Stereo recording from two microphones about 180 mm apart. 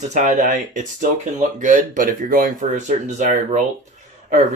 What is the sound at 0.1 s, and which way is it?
Speech, 45° right (ahead or behind).